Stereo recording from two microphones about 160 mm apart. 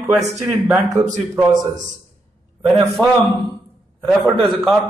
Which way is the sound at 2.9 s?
Centre (ahead or behind).